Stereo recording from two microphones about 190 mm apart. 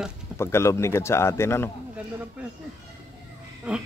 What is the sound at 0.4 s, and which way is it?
Speech, 15° left (ahead or behind).